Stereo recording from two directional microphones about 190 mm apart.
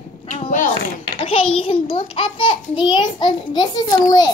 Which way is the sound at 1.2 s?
30° left (ahead or behind).